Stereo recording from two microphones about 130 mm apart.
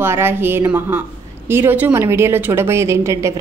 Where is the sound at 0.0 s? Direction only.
20° right (ahead or behind).